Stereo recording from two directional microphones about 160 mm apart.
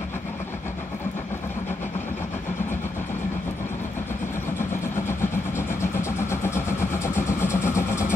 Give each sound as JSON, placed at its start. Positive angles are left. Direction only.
{"t": 6.3, "sound": "vehicle", "side_deg": 15}